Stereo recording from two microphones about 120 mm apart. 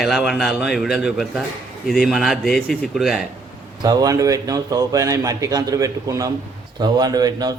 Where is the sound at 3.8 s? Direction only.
35° right (ahead or behind).